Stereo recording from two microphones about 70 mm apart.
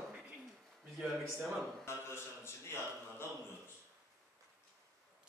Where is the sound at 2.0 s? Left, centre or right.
Left.